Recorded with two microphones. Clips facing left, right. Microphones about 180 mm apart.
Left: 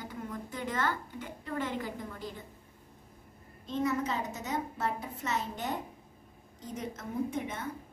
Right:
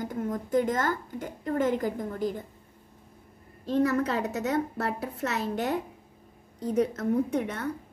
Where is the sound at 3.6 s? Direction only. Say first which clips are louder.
Right 6 dB; 65° right (ahead or behind).